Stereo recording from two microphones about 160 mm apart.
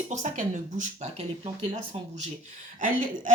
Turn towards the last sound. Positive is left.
turn(degrees=-55)  # may be behind; listen again after turning